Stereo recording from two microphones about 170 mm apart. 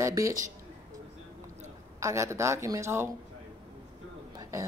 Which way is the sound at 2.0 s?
15° right (ahead or behind).